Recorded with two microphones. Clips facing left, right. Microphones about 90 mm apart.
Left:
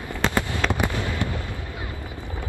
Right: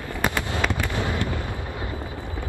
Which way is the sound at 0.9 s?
20° right (ahead or behind).